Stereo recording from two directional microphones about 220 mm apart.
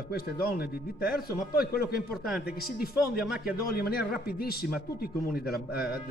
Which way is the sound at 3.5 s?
45° left (ahead or behind).